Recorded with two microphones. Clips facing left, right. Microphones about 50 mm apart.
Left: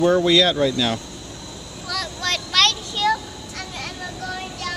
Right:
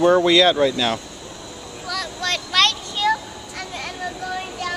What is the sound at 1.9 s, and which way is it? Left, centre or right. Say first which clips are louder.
Vehicle: even; centre.